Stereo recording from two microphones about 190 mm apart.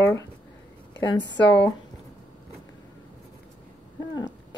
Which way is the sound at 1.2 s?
65° left (ahead or behind).